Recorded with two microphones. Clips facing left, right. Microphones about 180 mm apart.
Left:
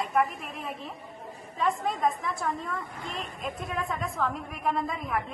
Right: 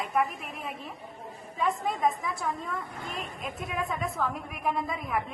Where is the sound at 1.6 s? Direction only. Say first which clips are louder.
Even; centre (ahead or behind).